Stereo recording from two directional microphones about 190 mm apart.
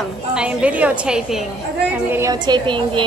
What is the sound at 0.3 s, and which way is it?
A woman's voice, 5° right (ahead or behind).